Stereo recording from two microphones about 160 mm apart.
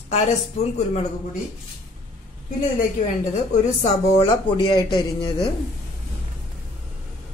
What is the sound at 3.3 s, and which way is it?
Speech, 40° left (ahead or behind).